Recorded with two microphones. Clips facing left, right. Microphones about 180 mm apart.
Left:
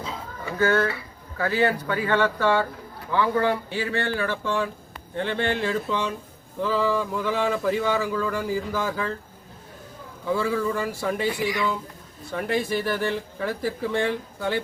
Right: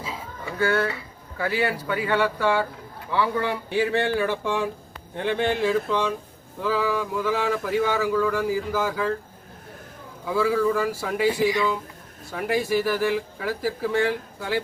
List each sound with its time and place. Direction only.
0.0 s a sound: 10° right (ahead or behind)
1.4 s speech: 15° right (ahead or behind)
7.2 s speech: 5° right (ahead or behind)
10.3 s speech: 5° right (ahead or behind)
11.3 s speech: 25° right (ahead or behind)
12.3 s speech: 5° right (ahead or behind)